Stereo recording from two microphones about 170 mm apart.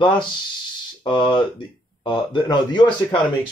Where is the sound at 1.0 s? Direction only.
30° left (ahead or behind).